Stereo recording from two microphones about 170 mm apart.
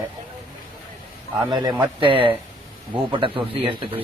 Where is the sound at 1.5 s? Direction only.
25° right (ahead or behind).